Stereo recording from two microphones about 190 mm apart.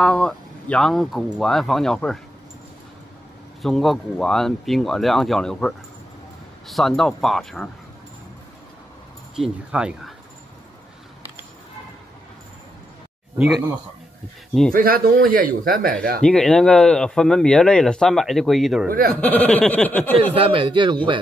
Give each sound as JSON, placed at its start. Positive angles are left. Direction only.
{"t": 0.0, "sound": "speech", "side_deg": 5}
{"t": 3.6, "sound": "speech", "side_deg": 0}
{"t": 9.3, "sound": "speech", "side_deg": -5}
{"t": 14.7, "sound": "a man's voice", "side_deg": -50}
{"t": 16.2, "sound": "speech", "side_deg": 5}
{"t": 18.9, "sound": "a man's voice", "side_deg": -50}
{"t": 19.2, "sound": "a sound", "side_deg": 5}
{"t": 20.3, "sound": "speech", "side_deg": -30}